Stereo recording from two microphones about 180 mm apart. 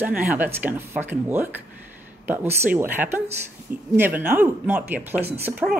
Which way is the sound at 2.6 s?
10° right (ahead or behind).